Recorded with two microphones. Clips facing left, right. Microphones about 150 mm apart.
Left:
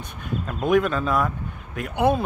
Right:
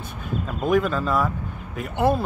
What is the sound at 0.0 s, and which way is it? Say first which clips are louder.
Speech: right 1 dB; centre (ahead or behind).